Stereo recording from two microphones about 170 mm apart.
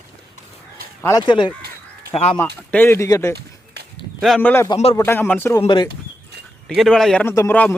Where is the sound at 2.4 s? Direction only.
10° left (ahead or behind).